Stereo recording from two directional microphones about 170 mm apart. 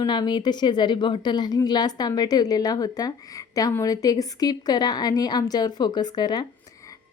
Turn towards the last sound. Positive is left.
turn(degrees=25)  # may be behind; listen again after turning